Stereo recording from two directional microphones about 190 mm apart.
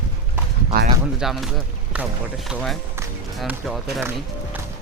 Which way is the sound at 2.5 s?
Centre (ahead or behind).